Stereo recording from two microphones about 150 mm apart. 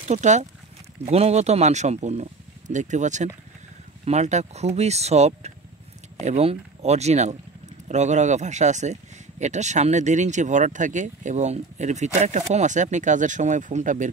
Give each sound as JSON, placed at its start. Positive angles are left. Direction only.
{"t": 0.1, "sound": "speech", "side_deg": -50}